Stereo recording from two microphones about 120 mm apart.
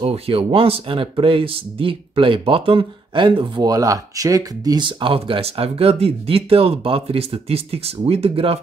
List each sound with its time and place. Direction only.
0.0 s speech: 50° right (ahead or behind)
3.6 s speech: 30° right (ahead or behind); by 8.5 s 55° right (ahead or behind)